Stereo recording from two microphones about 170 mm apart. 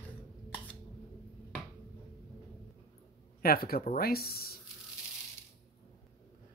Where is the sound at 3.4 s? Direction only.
60° left (ahead or behind).